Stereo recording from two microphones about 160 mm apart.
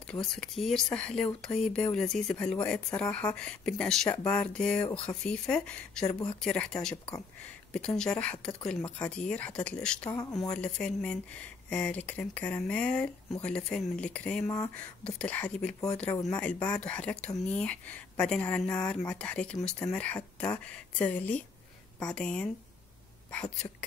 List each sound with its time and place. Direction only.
0.0 s speech: 5° left (ahead or behind)
14.4 s speech: 20° left (ahead or behind)
15.0 s speech: 5° left (ahead or behind)